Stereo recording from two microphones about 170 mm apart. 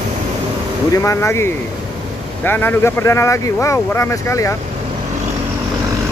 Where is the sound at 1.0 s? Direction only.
15° left (ahead or behind).